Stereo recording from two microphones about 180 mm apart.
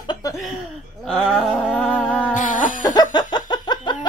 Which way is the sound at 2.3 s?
45° left (ahead or behind).